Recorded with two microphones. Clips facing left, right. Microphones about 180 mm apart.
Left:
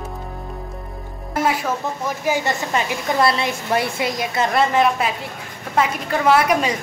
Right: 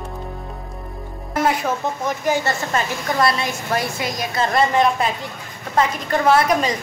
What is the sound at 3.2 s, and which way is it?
A woman's voice, 30° left (ahead or behind).